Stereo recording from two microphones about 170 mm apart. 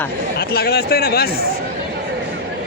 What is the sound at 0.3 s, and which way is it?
Speech, 70° left (ahead or behind).